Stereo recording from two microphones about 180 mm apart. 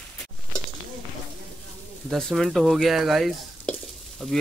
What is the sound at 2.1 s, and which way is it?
Stir, centre (ahead or behind).